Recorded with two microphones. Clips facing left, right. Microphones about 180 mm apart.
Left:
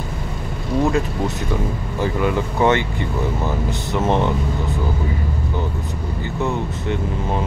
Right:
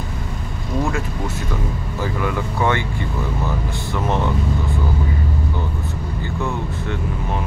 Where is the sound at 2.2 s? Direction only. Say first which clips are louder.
Left 4 dB; 20° left (ahead or behind).